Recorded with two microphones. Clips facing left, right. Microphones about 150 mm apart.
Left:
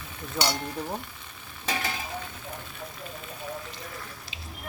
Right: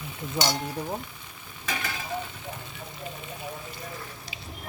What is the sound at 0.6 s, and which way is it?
Speech, 10° right (ahead or behind).